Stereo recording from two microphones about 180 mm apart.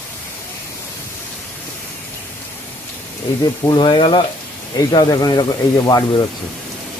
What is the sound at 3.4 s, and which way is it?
Speech, 25° left (ahead or behind).